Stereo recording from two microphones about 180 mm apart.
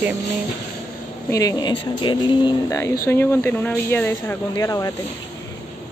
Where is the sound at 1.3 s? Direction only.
20° left (ahead or behind).